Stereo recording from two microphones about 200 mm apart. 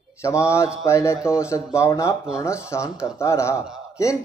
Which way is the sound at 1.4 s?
15° left (ahead or behind).